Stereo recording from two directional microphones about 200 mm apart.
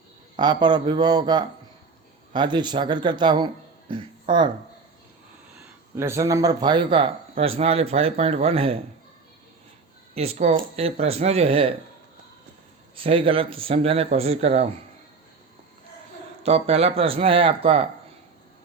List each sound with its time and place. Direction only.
0.3 s speech: 20° right (ahead or behind)
6.0 s speech: 15° right (ahead or behind)
10.2 s speech: 30° right (ahead or behind)
13.0 s speech: 25° right (ahead or behind)
16.4 s speech: 30° right (ahead or behind)